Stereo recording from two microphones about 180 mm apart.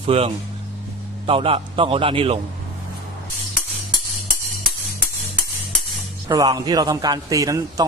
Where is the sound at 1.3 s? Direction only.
30° right (ahead or behind).